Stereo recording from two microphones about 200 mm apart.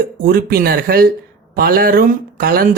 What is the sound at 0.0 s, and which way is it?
Speech, 45° right (ahead or behind).